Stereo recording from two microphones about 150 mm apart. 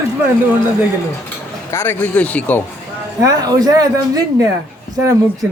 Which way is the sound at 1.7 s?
15° left (ahead or behind).